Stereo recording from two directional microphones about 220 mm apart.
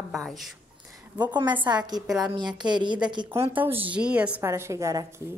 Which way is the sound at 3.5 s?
10° right (ahead or behind).